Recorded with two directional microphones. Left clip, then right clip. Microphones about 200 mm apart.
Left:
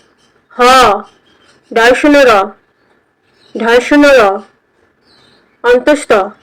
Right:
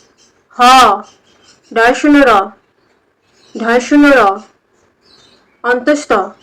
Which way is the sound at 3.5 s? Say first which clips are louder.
Left 3 dB; 15° left (ahead or behind).